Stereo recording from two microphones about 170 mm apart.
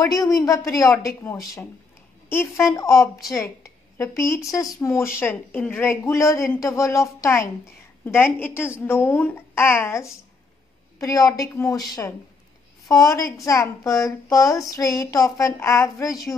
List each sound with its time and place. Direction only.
0.0 s a woman's voice: 20° left (ahead or behind)